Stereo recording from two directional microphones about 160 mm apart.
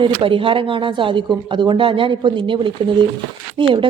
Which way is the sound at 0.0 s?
30° right (ahead or behind).